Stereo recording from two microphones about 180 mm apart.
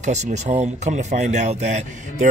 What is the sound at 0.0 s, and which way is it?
Speech, 40° right (ahead or behind).